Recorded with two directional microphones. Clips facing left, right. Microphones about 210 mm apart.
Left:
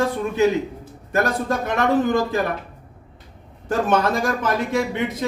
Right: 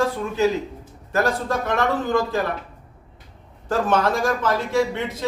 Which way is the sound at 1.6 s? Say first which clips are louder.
Left 4 dB; 20° left (ahead or behind).